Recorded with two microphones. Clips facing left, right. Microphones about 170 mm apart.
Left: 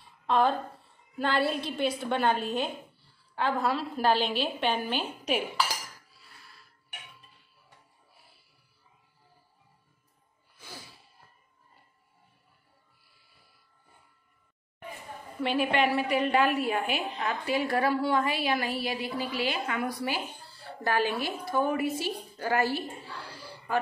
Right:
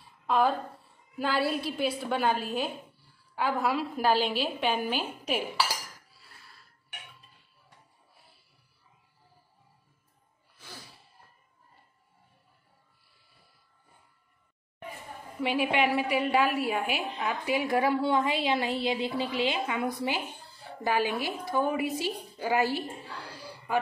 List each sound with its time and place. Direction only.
0.3 s a woman's voice: 5° right (ahead or behind)
15.4 s a woman's voice: 15° right (ahead or behind)